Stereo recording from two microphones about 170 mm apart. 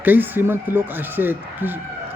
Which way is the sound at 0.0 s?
10° right (ahead or behind).